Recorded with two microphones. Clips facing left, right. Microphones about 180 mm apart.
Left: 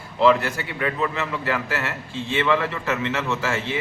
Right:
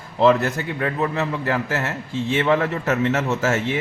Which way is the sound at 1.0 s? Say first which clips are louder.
Right 2 dB; 40° right (ahead or behind).